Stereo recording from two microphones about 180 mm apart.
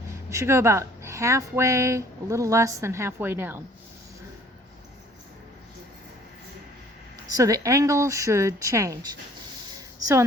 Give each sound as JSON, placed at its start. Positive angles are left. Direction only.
{"t": 0.3, "sound": "speech", "side_deg": -15}
{"t": 7.3, "sound": "speech", "side_deg": -20}